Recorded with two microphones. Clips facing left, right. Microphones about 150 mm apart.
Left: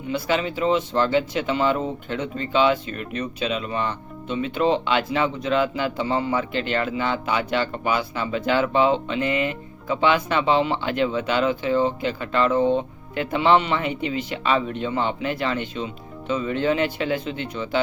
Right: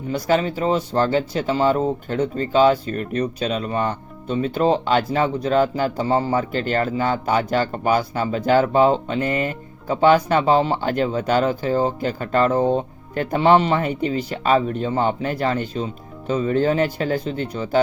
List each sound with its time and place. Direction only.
0.1 s speech: 40° right (ahead or behind)